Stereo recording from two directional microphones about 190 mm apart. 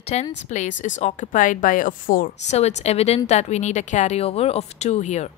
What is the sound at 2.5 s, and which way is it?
Speech, 35° left (ahead or behind).